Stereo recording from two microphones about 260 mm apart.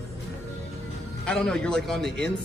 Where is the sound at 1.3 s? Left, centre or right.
Centre.